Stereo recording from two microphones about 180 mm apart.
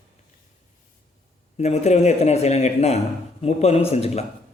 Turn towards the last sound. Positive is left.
turn(degrees=35)  # may be behind; listen again after turning